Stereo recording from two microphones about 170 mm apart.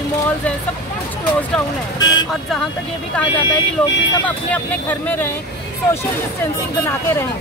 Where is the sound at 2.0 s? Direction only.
25° left (ahead or behind).